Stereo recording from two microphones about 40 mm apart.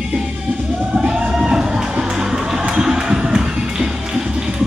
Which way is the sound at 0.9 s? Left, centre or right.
Right.